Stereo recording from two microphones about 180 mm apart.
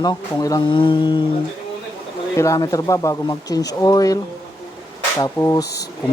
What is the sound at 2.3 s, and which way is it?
Speech, 15° left (ahead or behind).